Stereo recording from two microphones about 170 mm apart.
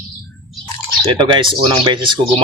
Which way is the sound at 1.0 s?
30° right (ahead or behind).